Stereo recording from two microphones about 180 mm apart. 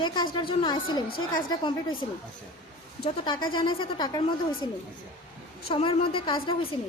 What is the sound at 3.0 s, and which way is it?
A woman's voice, 25° left (ahead or behind).